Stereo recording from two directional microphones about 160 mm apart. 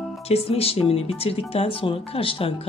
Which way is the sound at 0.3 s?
40° left (ahead or behind).